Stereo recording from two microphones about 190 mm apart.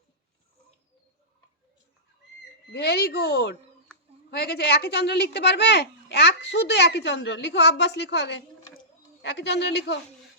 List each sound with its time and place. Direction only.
2.7 s a child's voice: 55° left (ahead or behind)